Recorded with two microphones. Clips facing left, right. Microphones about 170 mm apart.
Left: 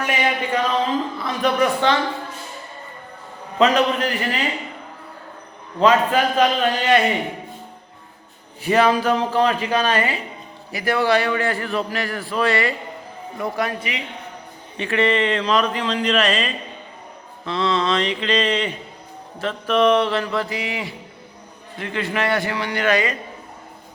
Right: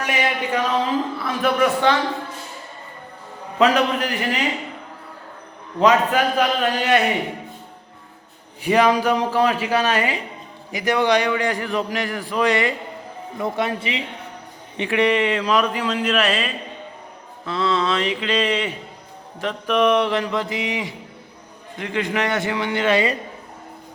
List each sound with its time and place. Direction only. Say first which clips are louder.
0.0 s a man's voice: left 1 dB; 10° right (ahead or behind)
3.8 s a man's voice: left 1 dB; 15° right (ahead or behind)
5.8 s a man's voice: even; 10° right (ahead or behind)
8.6 s a man's voice: even; 15° right (ahead or behind)
14.8 s a man's voice: right 1 dB; 15° right (ahead or behind)